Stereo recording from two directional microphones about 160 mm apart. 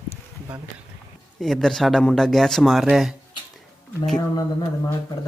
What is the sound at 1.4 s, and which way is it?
A man's voice, centre (ahead or behind).